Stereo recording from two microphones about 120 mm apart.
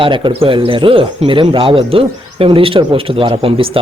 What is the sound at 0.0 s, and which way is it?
Speech, 45° right (ahead or behind).